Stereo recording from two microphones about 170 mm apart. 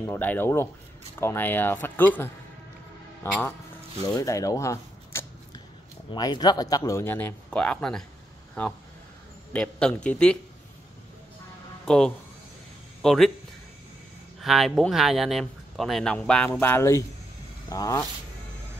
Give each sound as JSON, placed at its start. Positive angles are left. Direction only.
{"t": 0.0, "sound": "speech", "side_deg": 10}
{"t": 4.2, "sound": "a sound", "side_deg": 20}
{"t": 6.1, "sound": "speech", "side_deg": 25}
{"t": 9.5, "sound": "speech", "side_deg": 5}
{"t": 11.8, "sound": "speech", "side_deg": 5}
{"t": 14.4, "sound": "speech", "side_deg": 0}